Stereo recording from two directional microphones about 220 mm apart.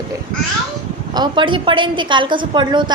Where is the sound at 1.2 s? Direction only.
20° right (ahead or behind).